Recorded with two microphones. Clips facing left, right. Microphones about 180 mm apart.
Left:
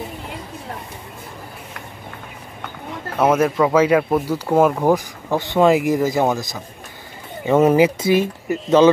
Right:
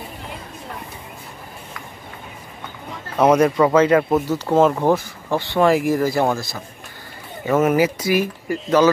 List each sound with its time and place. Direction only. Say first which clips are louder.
3.2 s speech: right 2 dB; 5° left (ahead or behind)
7.6 s speech: left 5 dB; 25° left (ahead or behind)